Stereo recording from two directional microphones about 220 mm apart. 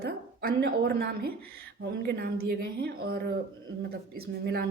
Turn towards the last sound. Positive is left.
turn(degrees=-45)  # may be behind; listen again after turning